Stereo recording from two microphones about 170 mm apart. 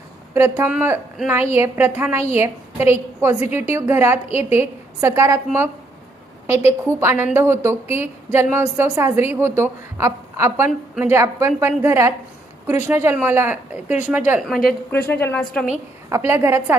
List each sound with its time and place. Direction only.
0.3 s a woman's voice: 15° right (ahead or behind)
14.7 s a woman's voice: 10° left (ahead or behind)
16.0 s a woman's voice: 15° right (ahead or behind)